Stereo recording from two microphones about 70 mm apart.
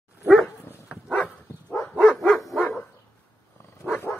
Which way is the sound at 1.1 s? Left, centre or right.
Left.